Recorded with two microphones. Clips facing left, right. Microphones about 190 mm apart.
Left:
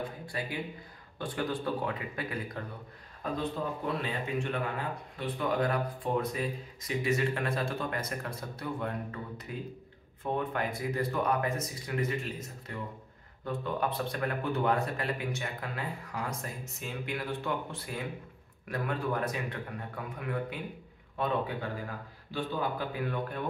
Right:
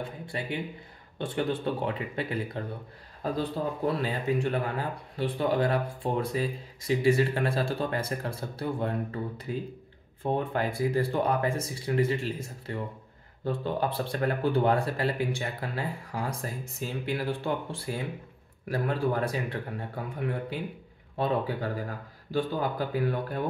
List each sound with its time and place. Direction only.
0.3 s speech: 25° right (ahead or behind)